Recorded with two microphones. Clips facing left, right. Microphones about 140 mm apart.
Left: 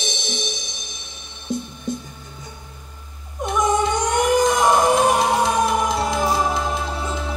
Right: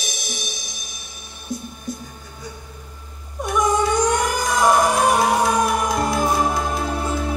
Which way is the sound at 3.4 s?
20° left (ahead or behind).